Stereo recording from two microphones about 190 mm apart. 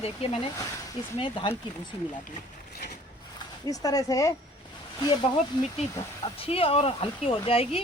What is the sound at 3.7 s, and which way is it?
Speech, 20° left (ahead or behind).